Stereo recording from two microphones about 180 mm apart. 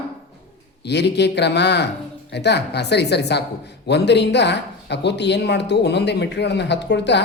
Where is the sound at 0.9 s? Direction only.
70° left (ahead or behind).